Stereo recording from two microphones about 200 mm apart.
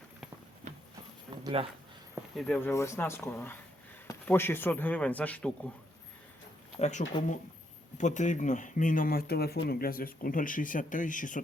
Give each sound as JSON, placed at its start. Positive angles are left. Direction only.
{"t": 0.6, "sound": "a sound", "side_deg": -35}
{"t": 1.5, "sound": "speech", "side_deg": -25}
{"t": 2.3, "sound": "speech", "side_deg": 5}
{"t": 6.7, "sound": "speech", "side_deg": 35}